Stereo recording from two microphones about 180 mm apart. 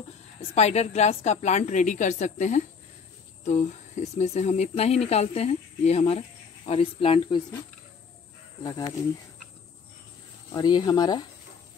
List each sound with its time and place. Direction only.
0.6 s speech: 40° left (ahead or behind)
8.6 s speech: 20° left (ahead or behind)
10.5 s speech: 25° left (ahead or behind)